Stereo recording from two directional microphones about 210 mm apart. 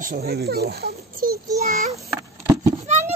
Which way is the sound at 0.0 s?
45° right (ahead or behind).